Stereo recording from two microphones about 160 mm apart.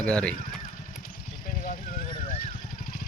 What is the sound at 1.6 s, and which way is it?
Vehicle, 55° left (ahead or behind).